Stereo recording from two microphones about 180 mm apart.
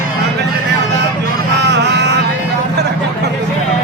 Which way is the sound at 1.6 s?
70° right (ahead or behind).